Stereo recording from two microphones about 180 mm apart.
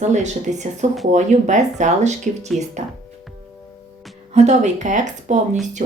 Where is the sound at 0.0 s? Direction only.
40° right (ahead or behind).